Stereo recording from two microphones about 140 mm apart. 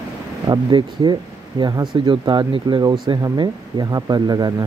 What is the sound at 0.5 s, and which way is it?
Speech, 30° right (ahead or behind).